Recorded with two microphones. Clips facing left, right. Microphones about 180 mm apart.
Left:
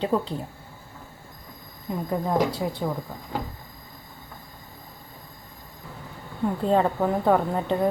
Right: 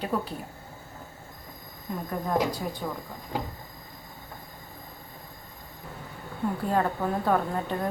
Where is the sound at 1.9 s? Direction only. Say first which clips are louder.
Left 3 dB; 20° left (ahead or behind).